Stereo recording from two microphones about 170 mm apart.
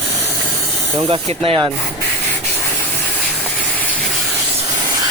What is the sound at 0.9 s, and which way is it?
Speech, 35° right (ahead or behind).